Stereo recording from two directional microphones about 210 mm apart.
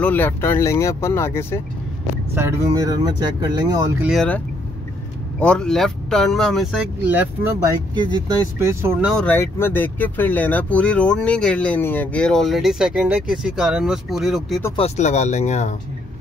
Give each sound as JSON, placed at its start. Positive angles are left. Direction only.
{"t": 0.0, "sound": "speech", "side_deg": 10}
{"t": 2.3, "sound": "speech", "side_deg": -10}
{"t": 4.0, "sound": "speech", "side_deg": 0}
{"t": 5.4, "sound": "speech", "side_deg": 5}
{"t": 9.1, "sound": "speech", "side_deg": 5}
{"t": 14.8, "sound": "speech", "side_deg": 35}